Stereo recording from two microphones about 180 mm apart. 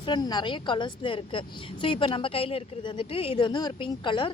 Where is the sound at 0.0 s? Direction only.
25° left (ahead or behind).